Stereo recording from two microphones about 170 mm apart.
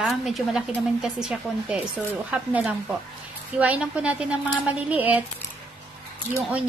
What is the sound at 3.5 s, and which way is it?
A woman's voice, 10° right (ahead or behind).